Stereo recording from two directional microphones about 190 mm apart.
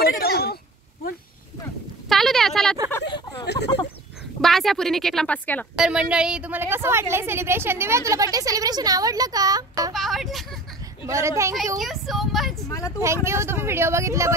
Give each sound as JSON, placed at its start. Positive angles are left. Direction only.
{"t": 0.0, "sound": "a sound", "side_deg": 55}
{"t": 2.0, "sound": "a sound", "side_deg": 0}
{"t": 3.1, "sound": "speech", "side_deg": 25}
{"t": 3.4, "sound": "speech", "side_deg": 60}
{"t": 4.4, "sound": "a woman's voice", "side_deg": 0}
{"t": 5.8, "sound": "a woman's voice", "side_deg": -5}
{"t": 9.9, "sound": "a woman's voice", "side_deg": 0}
{"t": 11.1, "sound": "a woman's voice", "side_deg": -15}
{"t": 11.8, "sound": "a woman's voice", "side_deg": 0}
{"t": 12.6, "sound": "speech", "side_deg": 15}
{"t": 13.0, "sound": "a woman's voice", "side_deg": -15}